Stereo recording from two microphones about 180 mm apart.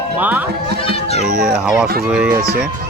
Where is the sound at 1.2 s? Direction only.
5° right (ahead or behind).